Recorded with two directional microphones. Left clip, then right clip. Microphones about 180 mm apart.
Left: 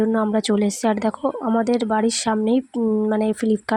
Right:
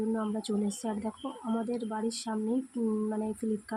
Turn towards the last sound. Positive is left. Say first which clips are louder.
# left 14 dB
turn(degrees=50)  # may be behind; listen again after turning